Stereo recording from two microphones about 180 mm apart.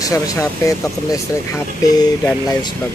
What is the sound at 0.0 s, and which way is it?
Speech, 20° left (ahead or behind).